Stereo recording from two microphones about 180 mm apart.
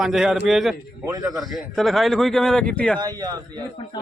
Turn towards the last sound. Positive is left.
turn(degrees=-20)  # may be behind; listen again after turning